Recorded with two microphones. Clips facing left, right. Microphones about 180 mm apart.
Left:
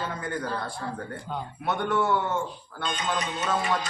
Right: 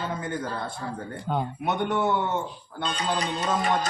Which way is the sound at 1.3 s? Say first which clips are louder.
Right 8 dB; 55° right (ahead or behind).